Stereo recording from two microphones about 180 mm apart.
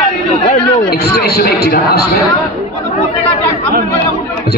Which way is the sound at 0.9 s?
65° left (ahead or behind).